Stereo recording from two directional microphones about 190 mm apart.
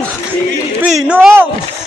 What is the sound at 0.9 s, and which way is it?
Speech, 5° right (ahead or behind).